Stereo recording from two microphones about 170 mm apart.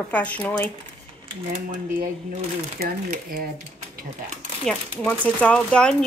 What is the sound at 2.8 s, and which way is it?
Speech, 60° right (ahead or behind).